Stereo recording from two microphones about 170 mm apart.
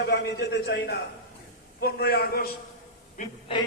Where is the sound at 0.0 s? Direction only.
70° left (ahead or behind).